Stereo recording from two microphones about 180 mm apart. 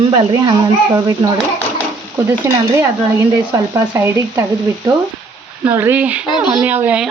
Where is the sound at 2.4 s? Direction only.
20° right (ahead or behind).